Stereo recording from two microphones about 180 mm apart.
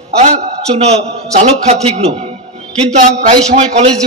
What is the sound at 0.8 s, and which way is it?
A man's voice, 35° right (ahead or behind).